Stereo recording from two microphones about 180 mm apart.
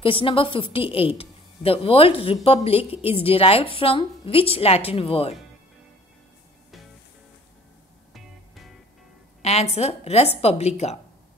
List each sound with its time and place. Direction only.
0.0 s a woman's voice: 30° left (ahead or behind)
8.1 s music: centre (ahead or behind)
9.4 s a woman's voice: 35° left (ahead or behind)